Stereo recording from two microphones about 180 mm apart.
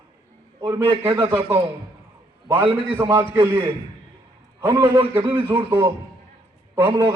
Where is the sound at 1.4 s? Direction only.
10° right (ahead or behind).